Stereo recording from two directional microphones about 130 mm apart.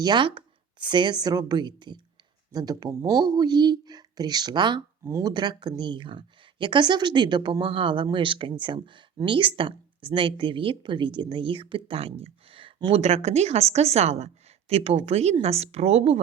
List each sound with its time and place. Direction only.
0.0 s speech: 35° right (ahead or behind)
5.0 s speech: 25° right (ahead or behind)
5.3 s a woman's voice: 35° right (ahead or behind); by 16.2 s 55° right (ahead or behind)